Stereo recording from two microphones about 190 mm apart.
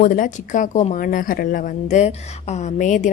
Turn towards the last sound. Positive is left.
turn(degrees=40)  # may be behind; listen again after turning